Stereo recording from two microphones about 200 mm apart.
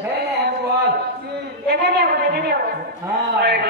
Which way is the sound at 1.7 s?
55° right (ahead or behind).